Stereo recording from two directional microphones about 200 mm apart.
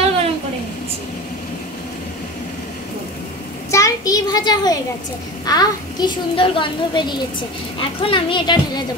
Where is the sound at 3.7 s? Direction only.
15° left (ahead or behind).